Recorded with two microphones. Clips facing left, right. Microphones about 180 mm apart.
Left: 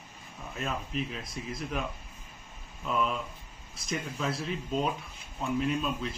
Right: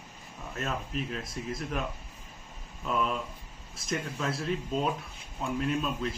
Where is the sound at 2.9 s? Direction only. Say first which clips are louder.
Even; centre (ahead or behind).